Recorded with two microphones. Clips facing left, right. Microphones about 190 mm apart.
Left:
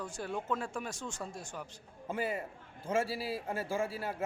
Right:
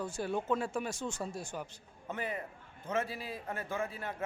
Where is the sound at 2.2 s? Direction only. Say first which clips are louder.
Left 3 dB; 10° left (ahead or behind).